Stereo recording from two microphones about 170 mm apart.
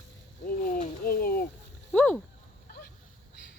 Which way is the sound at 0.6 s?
55° left (ahead or behind).